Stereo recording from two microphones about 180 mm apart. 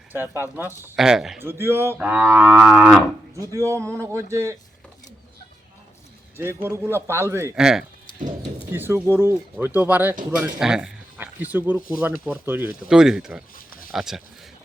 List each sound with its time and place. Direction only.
0.1 s cattle: 10° right (ahead or behind)
0.9 s speech: centre (ahead or behind)
1.4 s cattle: 15° right (ahead or behind)
3.4 s cattle: 15° right (ahead or behind)
6.3 s cattle: 15° right (ahead or behind)
7.5 s speech: 5° right (ahead or behind)
8.7 s cattle: 10° right (ahead or behind)
10.3 s speech: 5° right (ahead or behind)
11.9 s cattle: 10° right (ahead or behind)
13.6 s a sound: 50° left (ahead or behind)
13.9 s speech: centre (ahead or behind)